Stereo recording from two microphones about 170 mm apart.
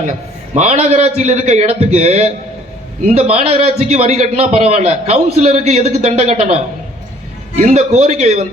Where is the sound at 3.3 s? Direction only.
40° right (ahead or behind).